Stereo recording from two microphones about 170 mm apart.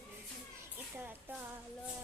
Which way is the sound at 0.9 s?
10° right (ahead or behind).